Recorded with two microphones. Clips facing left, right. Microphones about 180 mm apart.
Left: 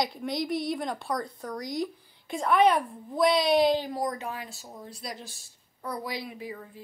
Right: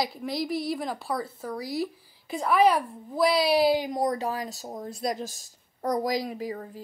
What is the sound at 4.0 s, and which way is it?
Speech, 35° right (ahead or behind).